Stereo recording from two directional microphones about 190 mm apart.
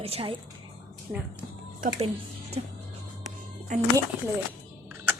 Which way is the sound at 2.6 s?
30° right (ahead or behind).